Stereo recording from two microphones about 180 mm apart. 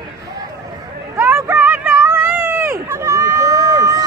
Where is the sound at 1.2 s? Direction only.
10° right (ahead or behind).